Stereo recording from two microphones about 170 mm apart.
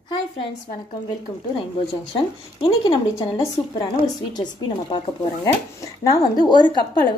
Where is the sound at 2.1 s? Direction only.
30° left (ahead or behind).